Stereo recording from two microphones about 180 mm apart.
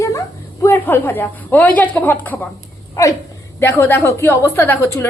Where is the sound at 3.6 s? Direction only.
10° left (ahead or behind).